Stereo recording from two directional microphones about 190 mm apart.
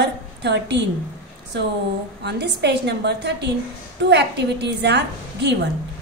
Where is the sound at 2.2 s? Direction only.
60° right (ahead or behind).